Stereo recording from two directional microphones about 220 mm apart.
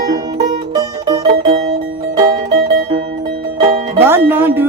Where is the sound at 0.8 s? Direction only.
20° right (ahead or behind).